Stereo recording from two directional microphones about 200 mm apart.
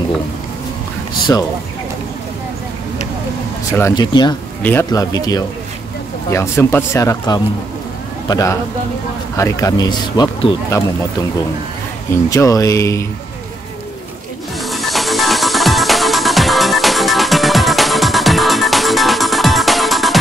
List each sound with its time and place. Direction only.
3.7 s speech: 15° left (ahead or behind)
12.3 s speech: 15° left (ahead or behind)
14.6 s music: centre (ahead or behind)